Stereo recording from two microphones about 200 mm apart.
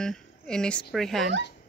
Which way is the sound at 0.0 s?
5° left (ahead or behind).